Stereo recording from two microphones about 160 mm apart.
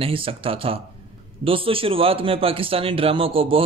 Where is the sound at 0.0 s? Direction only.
35° right (ahead or behind).